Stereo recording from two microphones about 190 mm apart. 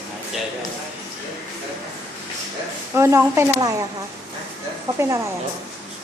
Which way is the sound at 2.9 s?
15° right (ahead or behind).